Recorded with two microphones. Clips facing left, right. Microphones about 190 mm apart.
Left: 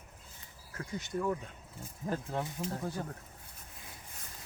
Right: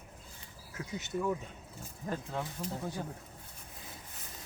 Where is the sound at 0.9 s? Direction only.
5° right (ahead or behind).